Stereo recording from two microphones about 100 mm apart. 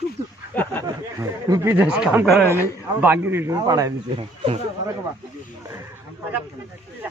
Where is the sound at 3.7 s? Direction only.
35° right (ahead or behind).